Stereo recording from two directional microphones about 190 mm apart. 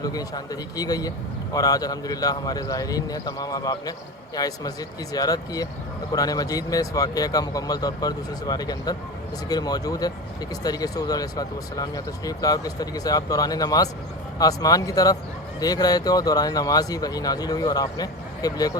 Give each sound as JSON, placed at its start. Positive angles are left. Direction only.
{"t": 0.0, "sound": "speech", "side_deg": 20}